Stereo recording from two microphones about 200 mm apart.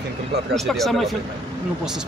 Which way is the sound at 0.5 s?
Centre (ahead or behind).